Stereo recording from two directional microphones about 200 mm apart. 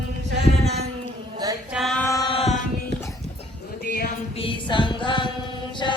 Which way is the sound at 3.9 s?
45° left (ahead or behind).